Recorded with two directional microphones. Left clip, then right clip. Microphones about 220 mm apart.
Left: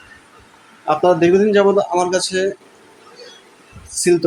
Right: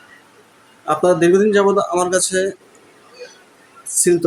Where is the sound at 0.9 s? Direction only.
15° right (ahead or behind).